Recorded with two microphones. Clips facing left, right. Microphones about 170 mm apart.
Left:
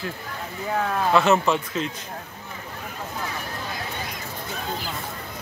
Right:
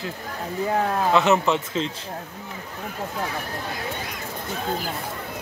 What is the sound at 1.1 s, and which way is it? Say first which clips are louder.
Speech: left 1 dB; 20° right (ahead or behind).